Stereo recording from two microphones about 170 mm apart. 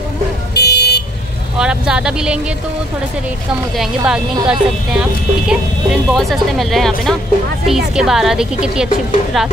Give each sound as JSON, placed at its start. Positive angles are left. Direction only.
{"t": 0.6, "sound": "vehicle", "side_deg": 75}
{"t": 1.6, "sound": "speech", "side_deg": -5}
{"t": 3.7, "sound": "speech", "side_deg": -5}